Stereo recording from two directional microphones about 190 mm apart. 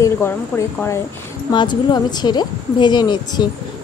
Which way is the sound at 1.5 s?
25° left (ahead or behind).